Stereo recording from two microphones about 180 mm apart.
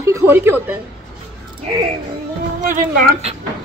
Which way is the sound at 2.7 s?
50° right (ahead or behind).